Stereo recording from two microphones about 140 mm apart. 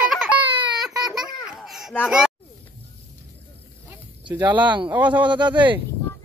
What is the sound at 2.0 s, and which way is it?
Speech, 5° right (ahead or behind).